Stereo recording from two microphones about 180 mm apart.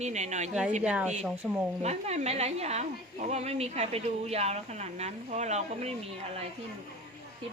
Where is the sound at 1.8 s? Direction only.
35° right (ahead or behind).